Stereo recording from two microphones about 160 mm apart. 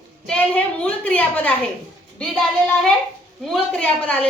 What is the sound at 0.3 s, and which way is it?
A woman's voice, 10° left (ahead or behind).